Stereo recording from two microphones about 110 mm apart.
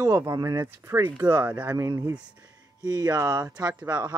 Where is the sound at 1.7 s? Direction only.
30° right (ahead or behind).